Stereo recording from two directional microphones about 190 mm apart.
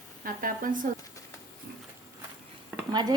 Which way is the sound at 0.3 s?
45° right (ahead or behind).